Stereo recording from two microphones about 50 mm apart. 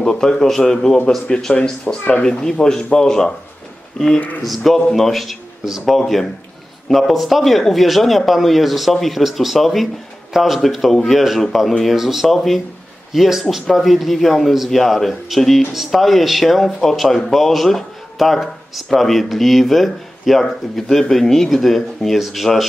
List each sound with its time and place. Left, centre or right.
0.0 s a man's voice: centre
1.3 s a man's voice: centre
4.4 s speech: centre